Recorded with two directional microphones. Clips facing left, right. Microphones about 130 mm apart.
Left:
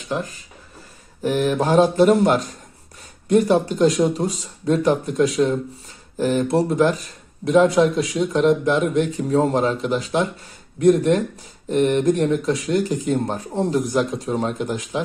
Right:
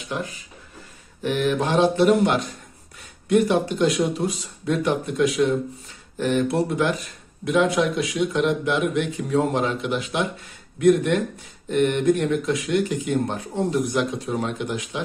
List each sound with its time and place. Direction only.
0.0 s speech: 35° left (ahead or behind)